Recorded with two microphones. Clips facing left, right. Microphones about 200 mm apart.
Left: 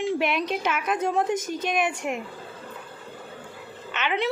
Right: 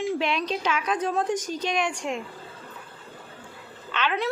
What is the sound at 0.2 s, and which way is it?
A woman's voice, 15° left (ahead or behind).